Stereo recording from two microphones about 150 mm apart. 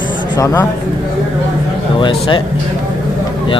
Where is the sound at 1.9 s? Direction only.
35° left (ahead or behind).